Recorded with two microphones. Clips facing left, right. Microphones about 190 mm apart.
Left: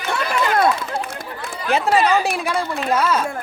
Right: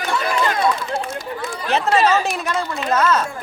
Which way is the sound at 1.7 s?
10° left (ahead or behind).